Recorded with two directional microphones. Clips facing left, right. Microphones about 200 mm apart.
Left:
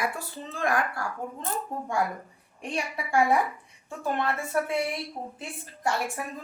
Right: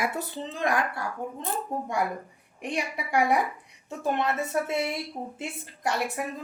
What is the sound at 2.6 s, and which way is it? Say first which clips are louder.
A woman's voice: right 1 dB; 20° right (ahead or behind).